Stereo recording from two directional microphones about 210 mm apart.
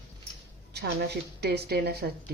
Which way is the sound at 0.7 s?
50° right (ahead or behind).